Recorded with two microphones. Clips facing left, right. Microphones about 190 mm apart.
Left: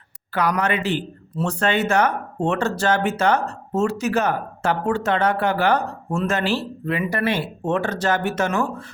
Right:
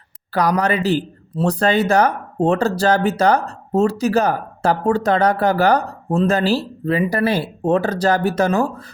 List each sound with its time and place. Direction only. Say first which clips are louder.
0.3 s speech: right 4 dB; 35° right (ahead or behind)